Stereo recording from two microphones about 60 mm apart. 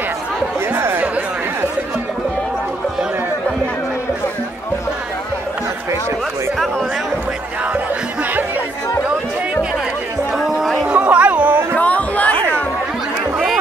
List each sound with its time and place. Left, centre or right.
0.7 s chatter: right
7.6 s music: right
10.3 s music: centre
10.9 s music: right
11.7 s music: left